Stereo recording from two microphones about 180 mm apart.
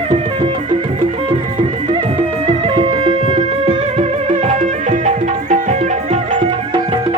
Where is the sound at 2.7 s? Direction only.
30° right (ahead or behind).